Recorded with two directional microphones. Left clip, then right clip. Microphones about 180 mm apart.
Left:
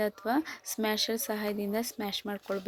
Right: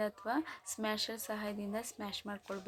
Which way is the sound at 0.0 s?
30° left (ahead or behind).